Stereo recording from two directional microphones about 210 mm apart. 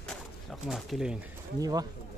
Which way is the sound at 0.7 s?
Centre (ahead or behind).